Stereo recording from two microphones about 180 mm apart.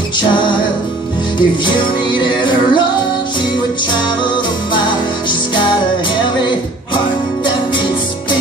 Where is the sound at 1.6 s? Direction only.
25° left (ahead or behind).